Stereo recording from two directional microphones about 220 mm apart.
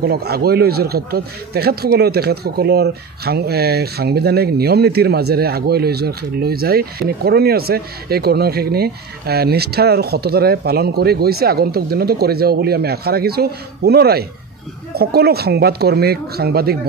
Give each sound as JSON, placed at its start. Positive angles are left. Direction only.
{"t": 0.0, "sound": "speech", "side_deg": -45}